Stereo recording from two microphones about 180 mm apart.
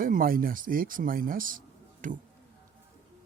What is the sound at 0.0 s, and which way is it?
Speech, 50° right (ahead or behind).